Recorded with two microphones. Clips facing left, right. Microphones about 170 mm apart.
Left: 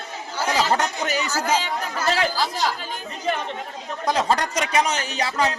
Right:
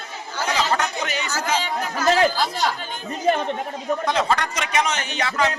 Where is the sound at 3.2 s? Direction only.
50° right (ahead or behind).